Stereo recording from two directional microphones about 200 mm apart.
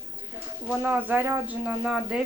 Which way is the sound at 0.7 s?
5° right (ahead or behind).